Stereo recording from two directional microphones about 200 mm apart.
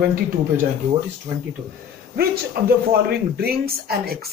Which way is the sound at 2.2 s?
50° right (ahead or behind).